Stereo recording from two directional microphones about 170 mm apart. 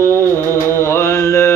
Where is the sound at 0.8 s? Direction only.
15° left (ahead or behind).